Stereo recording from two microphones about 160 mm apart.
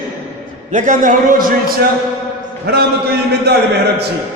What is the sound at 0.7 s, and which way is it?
A man's voice, 50° right (ahead or behind).